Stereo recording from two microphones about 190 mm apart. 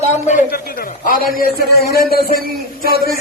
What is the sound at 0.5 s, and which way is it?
A man's voice, 50° left (ahead or behind).